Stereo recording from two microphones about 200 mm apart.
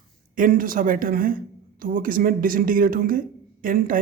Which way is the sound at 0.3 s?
45° right (ahead or behind).